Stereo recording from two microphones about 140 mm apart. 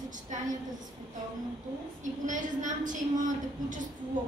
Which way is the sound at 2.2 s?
65° right (ahead or behind).